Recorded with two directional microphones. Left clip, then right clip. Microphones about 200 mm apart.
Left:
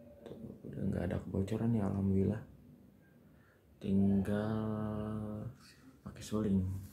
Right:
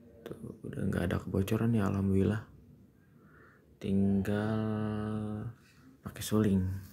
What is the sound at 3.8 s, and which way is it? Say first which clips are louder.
Mantra: right 2 dB; 10° right (ahead or behind).